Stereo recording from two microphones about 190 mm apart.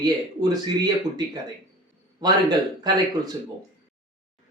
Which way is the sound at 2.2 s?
20° right (ahead or behind).